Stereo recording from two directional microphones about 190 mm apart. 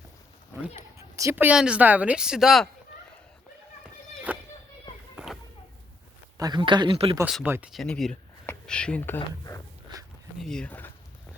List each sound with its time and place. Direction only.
0.8 s speech: 15° right (ahead or behind)
4.3 s a sound: 5° right (ahead or behind)
6.3 s speech: 20° right (ahead or behind)
7.3 s speech: centre (ahead or behind)
9.9 s a sound: 25° right (ahead or behind)
10.4 s speech: 5° left (ahead or behind)